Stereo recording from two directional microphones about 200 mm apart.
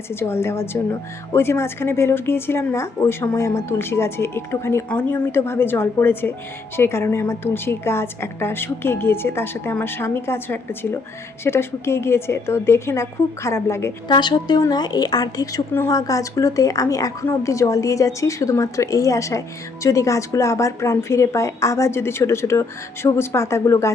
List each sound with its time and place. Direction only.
0.1 s a woman's voice: 10° left (ahead or behind)